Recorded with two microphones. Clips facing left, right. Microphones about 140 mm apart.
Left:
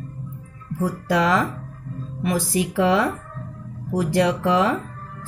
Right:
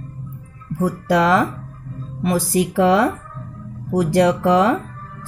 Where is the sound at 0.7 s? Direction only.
45° right (ahead or behind).